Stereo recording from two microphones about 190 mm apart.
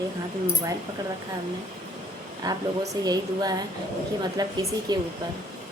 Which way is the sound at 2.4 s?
20° right (ahead or behind).